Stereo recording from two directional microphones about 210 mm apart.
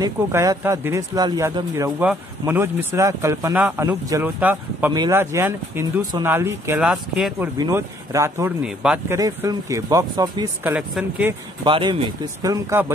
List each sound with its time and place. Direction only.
0.0 s speech: 15° right (ahead or behind)
7.5 s speech: 15° right (ahead or behind)
9.2 s speech: 15° right (ahead or behind)
11.6 s speech: 25° right (ahead or behind)